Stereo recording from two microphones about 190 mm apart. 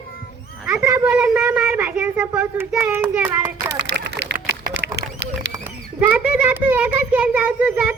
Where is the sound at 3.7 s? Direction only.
65° right (ahead or behind).